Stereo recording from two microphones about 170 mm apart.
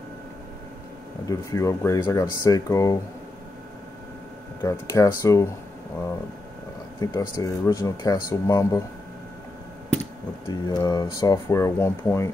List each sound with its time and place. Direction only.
1.3 s speech: 20° left (ahead or behind)
4.6 s speech: 20° left (ahead or behind)
7.0 s speech: 20° left (ahead or behind)
10.5 s speech: 25° left (ahead or behind)